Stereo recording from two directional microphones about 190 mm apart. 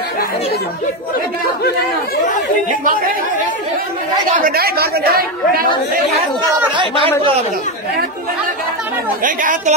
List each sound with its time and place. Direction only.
4.5 s speech: 55° right (ahead or behind)
9.2 s speech: 45° right (ahead or behind)